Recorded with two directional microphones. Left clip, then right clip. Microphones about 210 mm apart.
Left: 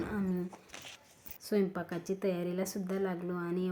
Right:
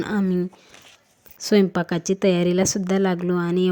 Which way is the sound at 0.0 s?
35° right (ahead or behind).